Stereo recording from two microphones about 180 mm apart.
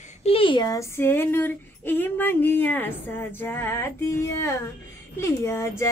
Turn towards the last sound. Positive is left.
turn(degrees=15)  # may be behind; listen again after turning